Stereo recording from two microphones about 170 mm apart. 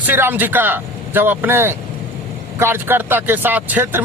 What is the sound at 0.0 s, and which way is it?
Speech, 10° right (ahead or behind).